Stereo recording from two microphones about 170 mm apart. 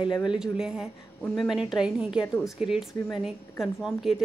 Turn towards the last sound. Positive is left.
turn(degrees=0)  # may be behind; listen again after turning